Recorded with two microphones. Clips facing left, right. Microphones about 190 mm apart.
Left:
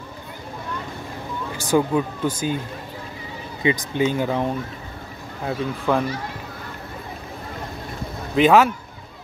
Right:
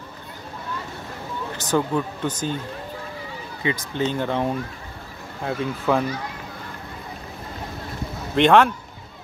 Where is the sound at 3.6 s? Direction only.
15° left (ahead or behind).